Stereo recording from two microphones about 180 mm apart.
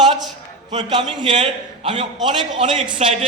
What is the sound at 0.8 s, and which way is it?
A man's voice, 25° right (ahead or behind).